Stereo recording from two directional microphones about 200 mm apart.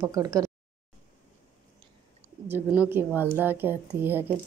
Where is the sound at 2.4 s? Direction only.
10° right (ahead or behind).